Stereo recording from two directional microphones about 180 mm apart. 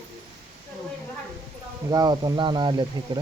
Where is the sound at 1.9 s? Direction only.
20° right (ahead or behind).